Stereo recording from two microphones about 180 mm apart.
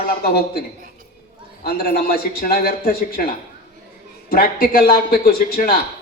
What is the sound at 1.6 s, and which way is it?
Speech, 55° left (ahead or behind).